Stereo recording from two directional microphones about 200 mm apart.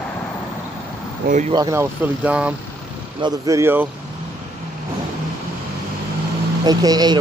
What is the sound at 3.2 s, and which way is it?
Speech, 15° right (ahead or behind).